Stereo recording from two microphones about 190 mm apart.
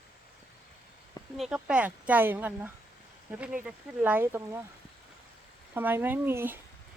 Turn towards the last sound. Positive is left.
turn(degrees=-10)  # may be behind; listen again after turning